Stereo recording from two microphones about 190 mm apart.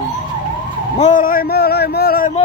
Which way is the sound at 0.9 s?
40° left (ahead or behind).